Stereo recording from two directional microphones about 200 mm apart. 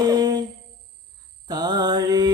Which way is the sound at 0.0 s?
20° right (ahead or behind).